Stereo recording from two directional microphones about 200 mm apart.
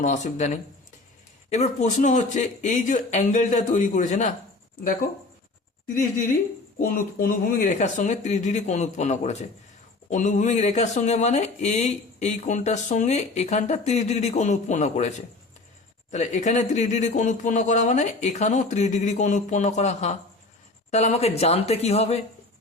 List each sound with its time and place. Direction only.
0.0 s speech: 35° left (ahead or behind)
5.9 s speech: 40° left (ahead or behind)
16.1 s speech: 35° left (ahead or behind)